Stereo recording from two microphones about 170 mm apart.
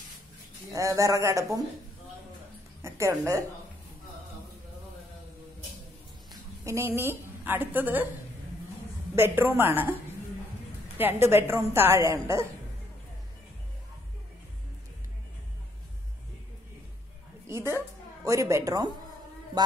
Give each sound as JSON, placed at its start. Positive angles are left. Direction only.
{"t": 0.7, "sound": "a man's voice", "side_deg": -20}
{"t": 2.8, "sound": "a woman's voice", "side_deg": -15}
{"t": 6.6, "sound": "a woman's voice", "side_deg": -15}
{"t": 9.1, "sound": "a woman's voice", "side_deg": -15}
{"t": 11.0, "sound": "a woman's voice", "side_deg": -15}
{"t": 18.2, "sound": "a man's voice", "side_deg": -20}